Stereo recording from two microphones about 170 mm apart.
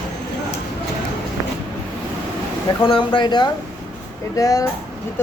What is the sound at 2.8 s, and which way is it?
Speech, 30° left (ahead or behind).